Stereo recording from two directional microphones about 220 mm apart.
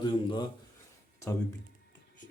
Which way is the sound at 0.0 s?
20° left (ahead or behind).